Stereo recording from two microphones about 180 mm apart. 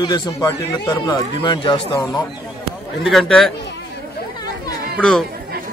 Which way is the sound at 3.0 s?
5° left (ahead or behind).